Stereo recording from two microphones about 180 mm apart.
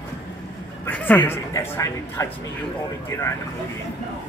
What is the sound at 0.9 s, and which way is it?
Speech, 10° left (ahead or behind).